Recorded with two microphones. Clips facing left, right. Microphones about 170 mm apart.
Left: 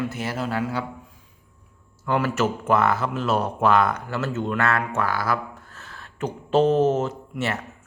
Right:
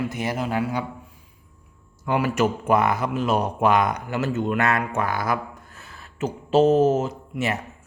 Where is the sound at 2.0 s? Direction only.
15° right (ahead or behind).